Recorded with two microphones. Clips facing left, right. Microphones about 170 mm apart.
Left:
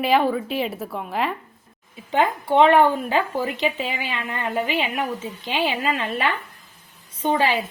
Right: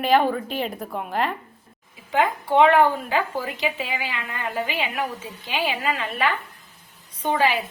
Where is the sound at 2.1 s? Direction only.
30° left (ahead or behind).